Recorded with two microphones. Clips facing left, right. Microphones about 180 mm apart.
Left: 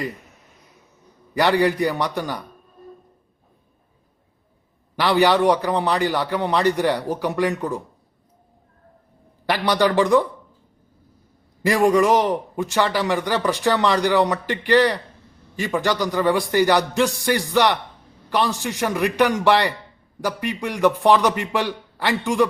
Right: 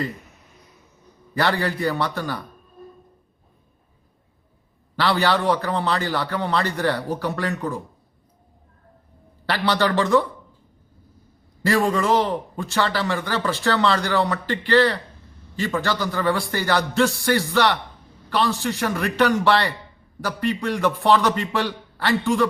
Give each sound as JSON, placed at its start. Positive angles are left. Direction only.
{"t": 1.4, "sound": "a man's voice", "side_deg": 15}
{"t": 4.9, "sound": "a man's voice", "side_deg": 15}
{"t": 9.5, "sound": "a man's voice", "side_deg": 15}
{"t": 11.6, "sound": "a man's voice", "side_deg": 15}